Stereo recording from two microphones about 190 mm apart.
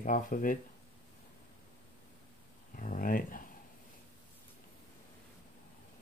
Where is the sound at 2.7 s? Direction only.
45° left (ahead or behind).